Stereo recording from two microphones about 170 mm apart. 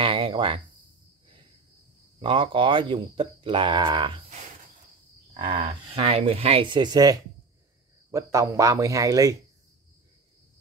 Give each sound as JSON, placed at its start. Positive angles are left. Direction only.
{"t": 0.0, "sound": "a sound", "side_deg": -30}
{"t": 2.1, "sound": "speech", "side_deg": -30}
{"t": 5.3, "sound": "speech", "side_deg": -30}